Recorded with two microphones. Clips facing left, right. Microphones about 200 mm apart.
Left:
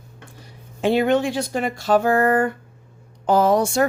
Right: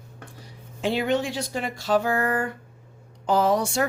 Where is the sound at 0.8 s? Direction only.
55° left (ahead or behind).